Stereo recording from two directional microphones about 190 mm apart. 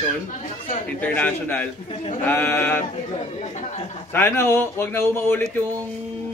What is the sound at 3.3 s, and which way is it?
Speech, 35° left (ahead or behind).